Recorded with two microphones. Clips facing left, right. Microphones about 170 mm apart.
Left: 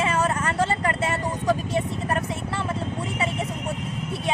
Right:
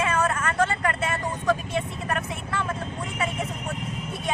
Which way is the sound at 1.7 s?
35° left (ahead or behind).